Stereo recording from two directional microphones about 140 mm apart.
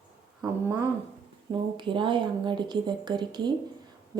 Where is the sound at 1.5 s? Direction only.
35° right (ahead or behind).